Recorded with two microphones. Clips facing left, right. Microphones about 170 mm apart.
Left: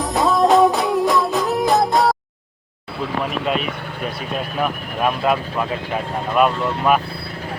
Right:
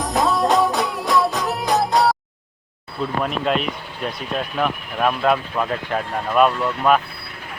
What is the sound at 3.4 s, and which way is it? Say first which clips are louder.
Speech: right 2 dB; centre (ahead or behind).